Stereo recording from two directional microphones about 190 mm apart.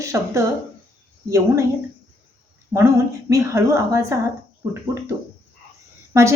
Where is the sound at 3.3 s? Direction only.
15° right (ahead or behind).